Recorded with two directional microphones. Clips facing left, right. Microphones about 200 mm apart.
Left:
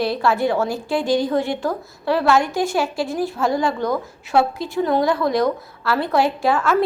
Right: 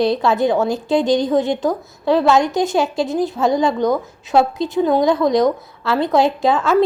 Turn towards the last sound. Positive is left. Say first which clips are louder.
# right 3 dB
turn(degrees=-20)  # may be behind; listen again after turning